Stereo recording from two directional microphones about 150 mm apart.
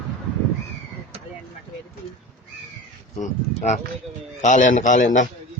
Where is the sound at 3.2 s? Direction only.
50° left (ahead or behind).